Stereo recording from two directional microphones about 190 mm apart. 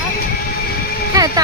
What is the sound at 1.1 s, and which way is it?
Speech, 20° right (ahead or behind).